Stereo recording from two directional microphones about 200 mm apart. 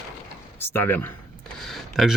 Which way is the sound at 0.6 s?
10° left (ahead or behind).